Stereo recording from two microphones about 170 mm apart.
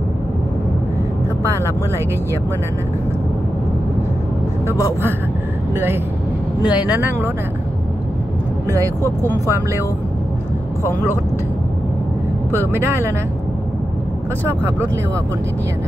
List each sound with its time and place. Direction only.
1.4 s speech: 15° right (ahead or behind)
6.7 s speech: 10° right (ahead or behind)
8.6 s speech: 20° right (ahead or behind)
12.7 s speech: 15° right (ahead or behind)